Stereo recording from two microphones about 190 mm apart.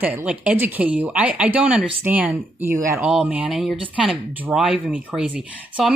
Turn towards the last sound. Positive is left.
turn(degrees=-5)  # may be behind; listen again after turning